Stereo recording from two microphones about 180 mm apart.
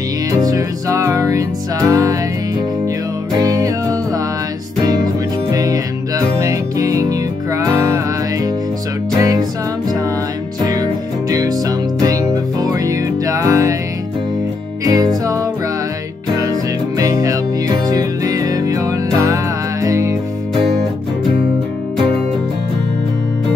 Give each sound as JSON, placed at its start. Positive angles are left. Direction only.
{"t": 0.3, "sound": "music", "side_deg": -20}
{"t": 3.3, "sound": "music", "side_deg": -20}
{"t": 14.9, "sound": "music", "side_deg": -20}
{"t": 17.0, "sound": "music", "side_deg": -20}